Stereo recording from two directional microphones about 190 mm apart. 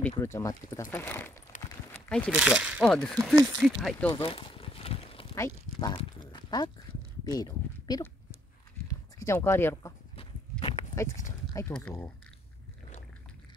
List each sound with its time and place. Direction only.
0.0 s speech: 15° left (ahead or behind)
2.3 s speech: 5° right (ahead or behind)
4.1 s a sound: 25° left (ahead or behind)
5.3 s speech: 15° left (ahead or behind)
5.9 s a sound: 25° left (ahead or behind)
7.2 s speech: 20° left (ahead or behind)
8.8 s a sound: 15° left (ahead or behind)
10.6 s horse: 25° left (ahead or behind)
11.5 s speech: 10° left (ahead or behind)